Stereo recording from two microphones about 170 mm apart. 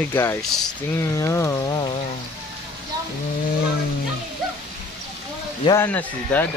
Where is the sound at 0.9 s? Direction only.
15° left (ahead or behind).